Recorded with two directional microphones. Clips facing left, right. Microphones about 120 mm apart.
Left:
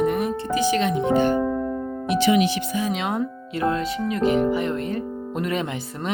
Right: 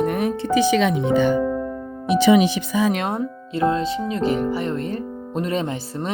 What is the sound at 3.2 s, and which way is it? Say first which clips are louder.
Speech: right 3 dB; 25° right (ahead or behind).